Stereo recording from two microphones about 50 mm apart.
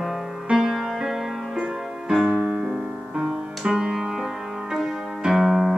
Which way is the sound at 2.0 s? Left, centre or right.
Centre.